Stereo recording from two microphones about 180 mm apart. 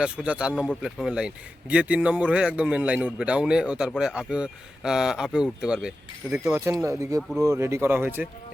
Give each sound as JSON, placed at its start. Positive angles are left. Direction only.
{"t": 0.0, "sound": "a man's voice", "side_deg": -5}
{"t": 6.3, "sound": "speech", "side_deg": -15}
{"t": 7.2, "sound": "a man's voice", "side_deg": 0}
{"t": 7.4, "sound": "speech", "side_deg": -15}